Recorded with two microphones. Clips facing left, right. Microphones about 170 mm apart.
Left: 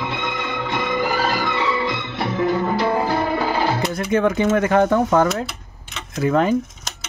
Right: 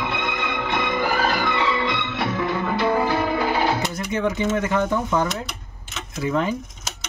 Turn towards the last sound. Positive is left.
turn(degrees=70)  # may be behind; listen again after turning